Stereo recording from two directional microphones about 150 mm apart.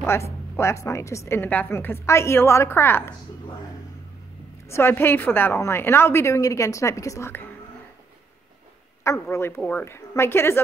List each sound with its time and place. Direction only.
0.0 s a woman's voice: 15° left (ahead or behind)
4.6 s a woman's voice: 15° left (ahead or behind)
9.0 s a woman's voice: 20° left (ahead or behind)